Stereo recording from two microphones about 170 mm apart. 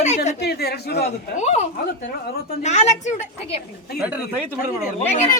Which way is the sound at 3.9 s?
10° right (ahead or behind).